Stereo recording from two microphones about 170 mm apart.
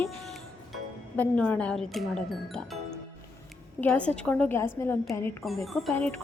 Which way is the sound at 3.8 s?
10° left (ahead or behind).